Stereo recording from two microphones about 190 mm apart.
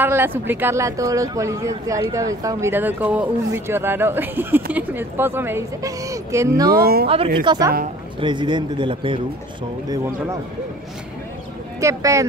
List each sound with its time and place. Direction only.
0.0 s speech: 10° right (ahead or behind)
6.7 s speech: 50° right (ahead or behind)
7.4 s a man's voice: 20° right (ahead or behind)
9.8 s speech: 15° right (ahead or behind)
11.8 s speech: 15° right (ahead or behind)